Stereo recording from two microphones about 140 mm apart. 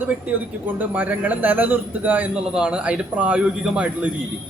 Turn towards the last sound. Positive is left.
turn(degrees=-10)  # may be behind; listen again after turning